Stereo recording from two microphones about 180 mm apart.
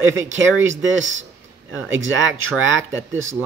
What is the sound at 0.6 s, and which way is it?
Speech, 90° right.